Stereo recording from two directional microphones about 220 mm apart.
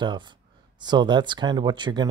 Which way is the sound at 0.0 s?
20° right (ahead or behind).